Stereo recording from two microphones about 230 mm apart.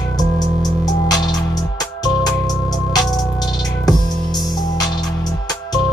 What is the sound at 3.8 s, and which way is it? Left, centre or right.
Music, centre.